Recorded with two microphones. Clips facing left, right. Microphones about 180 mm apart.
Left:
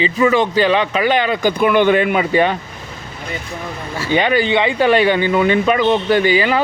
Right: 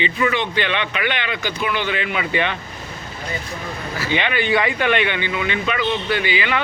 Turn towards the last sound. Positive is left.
turn(degrees=40)  # may be behind; listen again after turning